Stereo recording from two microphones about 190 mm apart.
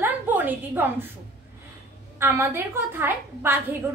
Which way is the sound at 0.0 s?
10° right (ahead or behind).